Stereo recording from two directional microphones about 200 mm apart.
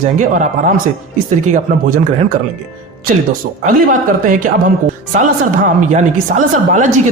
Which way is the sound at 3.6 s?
40° right (ahead or behind).